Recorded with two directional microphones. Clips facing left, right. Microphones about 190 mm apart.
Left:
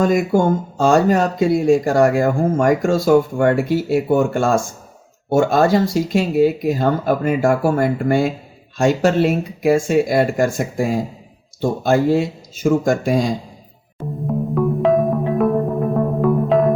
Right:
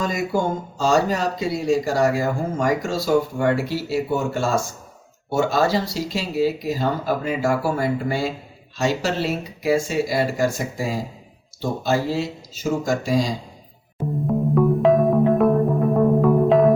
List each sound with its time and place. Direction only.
0.0 s speech: 50° left (ahead or behind)
14.3 s music: centre (ahead or behind)